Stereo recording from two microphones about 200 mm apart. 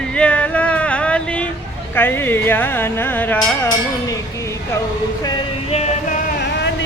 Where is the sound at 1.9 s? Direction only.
10° left (ahead or behind).